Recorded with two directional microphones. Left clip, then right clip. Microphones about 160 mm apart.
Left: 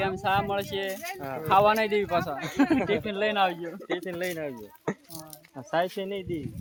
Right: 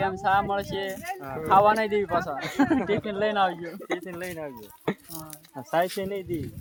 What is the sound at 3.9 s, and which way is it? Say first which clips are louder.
Speech: left 3 dB; 65° left (ahead or behind).